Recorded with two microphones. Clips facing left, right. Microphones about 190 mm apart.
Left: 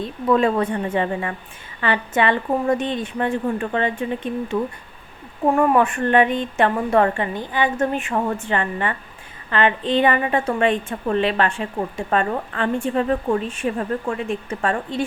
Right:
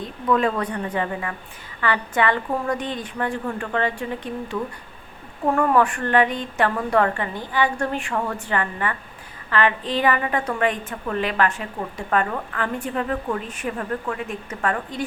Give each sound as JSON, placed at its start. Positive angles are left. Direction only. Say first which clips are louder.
{"t": 0.0, "sound": "a woman's voice", "louder": "left 3 dB", "side_deg": 25}